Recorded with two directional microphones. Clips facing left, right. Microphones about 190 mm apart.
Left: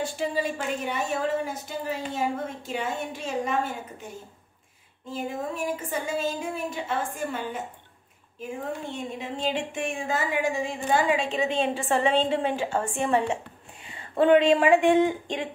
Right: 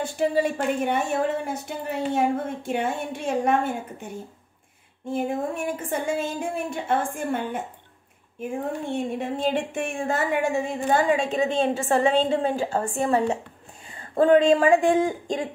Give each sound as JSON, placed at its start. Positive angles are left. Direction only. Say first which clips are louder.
{"t": 0.0, "sound": "a woman's voice", "louder": "right 5 dB", "side_deg": -55}
{"t": 5.1, "sound": "a woman's voice", "louder": "right 5 dB", "side_deg": -60}
{"t": 8.9, "sound": "a woman's voice", "louder": "right 6 dB", "side_deg": -55}